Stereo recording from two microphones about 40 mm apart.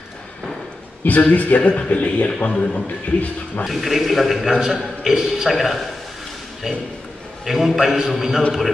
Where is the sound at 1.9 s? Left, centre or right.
Left.